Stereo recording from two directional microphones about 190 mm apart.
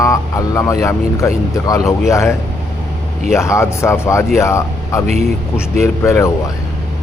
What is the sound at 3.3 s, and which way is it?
Speech, 15° left (ahead or behind).